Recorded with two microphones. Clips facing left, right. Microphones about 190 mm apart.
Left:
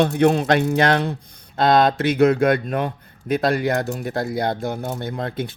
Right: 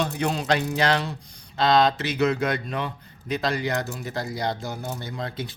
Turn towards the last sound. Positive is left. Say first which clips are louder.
# left 6 dB
turn(degrees=55)  # may be behind; listen again after turning